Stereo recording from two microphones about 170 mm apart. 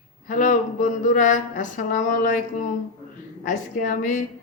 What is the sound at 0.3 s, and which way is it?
A man's voice, 50° left (ahead or behind).